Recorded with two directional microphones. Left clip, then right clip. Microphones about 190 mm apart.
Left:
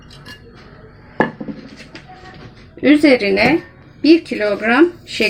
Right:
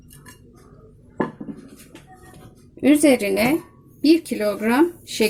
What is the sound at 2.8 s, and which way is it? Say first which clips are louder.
Speech: left 5 dB; 45° right (ahead or behind).